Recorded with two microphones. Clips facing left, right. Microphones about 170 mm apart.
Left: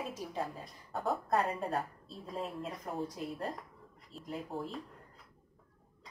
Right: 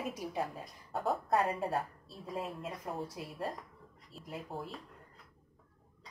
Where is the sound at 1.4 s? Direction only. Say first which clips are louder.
Right 1 dB; centre (ahead or behind).